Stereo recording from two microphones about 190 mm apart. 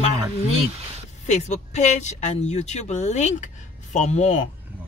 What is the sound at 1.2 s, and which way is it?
Speech, 35° left (ahead or behind).